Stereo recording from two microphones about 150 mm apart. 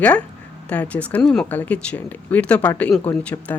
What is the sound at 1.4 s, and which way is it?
Speech, 10° left (ahead or behind).